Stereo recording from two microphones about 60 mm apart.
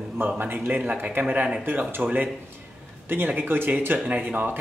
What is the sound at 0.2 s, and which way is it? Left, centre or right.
Speech, right.